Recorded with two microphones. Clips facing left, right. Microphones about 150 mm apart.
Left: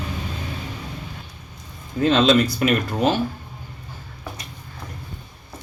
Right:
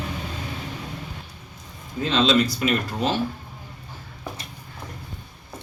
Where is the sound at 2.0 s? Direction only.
55° left (ahead or behind).